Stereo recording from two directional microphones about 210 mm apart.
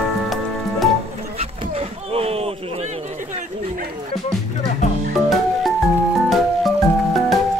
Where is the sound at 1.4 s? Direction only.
30° right (ahead or behind).